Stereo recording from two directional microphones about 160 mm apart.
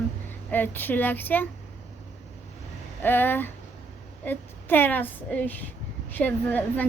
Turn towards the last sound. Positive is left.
turn(degrees=10)  # may be behind; listen again after turning